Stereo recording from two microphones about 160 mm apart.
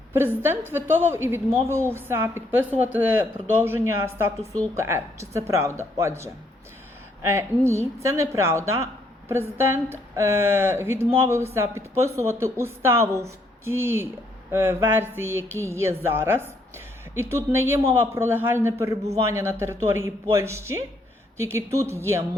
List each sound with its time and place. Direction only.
0.7 s a woman's voice: 15° right (ahead or behind)